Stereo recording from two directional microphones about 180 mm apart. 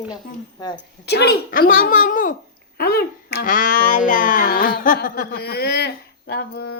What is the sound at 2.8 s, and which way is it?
A child's voice, 60° left (ahead or behind).